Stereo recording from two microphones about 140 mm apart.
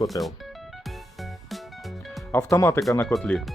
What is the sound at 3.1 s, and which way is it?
Speech, 5° left (ahead or behind).